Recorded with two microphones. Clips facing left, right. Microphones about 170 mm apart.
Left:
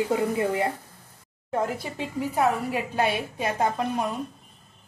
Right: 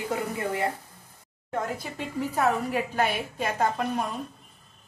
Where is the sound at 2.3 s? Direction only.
15° left (ahead or behind).